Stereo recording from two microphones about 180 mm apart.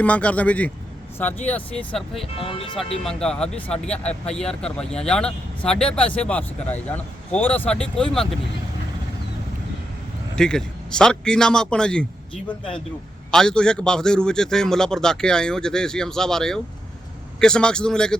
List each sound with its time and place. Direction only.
0.0 s speech: 10° left (ahead or behind)
2.2 s speech: 30° left (ahead or behind)
3.0 s speech: 5° left (ahead or behind)
10.3 s speech: 5° left (ahead or behind)